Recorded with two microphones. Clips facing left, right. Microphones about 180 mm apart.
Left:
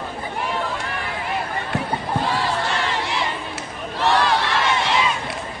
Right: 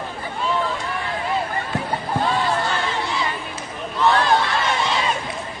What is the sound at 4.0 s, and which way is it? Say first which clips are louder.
Crowd: right 2 dB; 70° left (ahead or behind).